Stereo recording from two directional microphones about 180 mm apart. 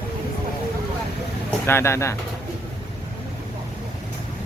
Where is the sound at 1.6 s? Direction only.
15° left (ahead or behind).